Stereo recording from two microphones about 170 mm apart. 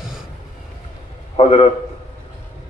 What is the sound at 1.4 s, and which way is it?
Speech, 35° left (ahead or behind).